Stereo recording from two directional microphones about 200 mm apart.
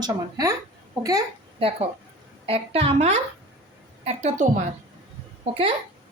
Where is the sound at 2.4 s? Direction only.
30° right (ahead or behind).